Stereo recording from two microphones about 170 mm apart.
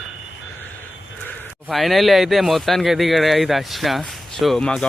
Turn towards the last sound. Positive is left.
turn(degrees=5)  # may be behind; listen again after turning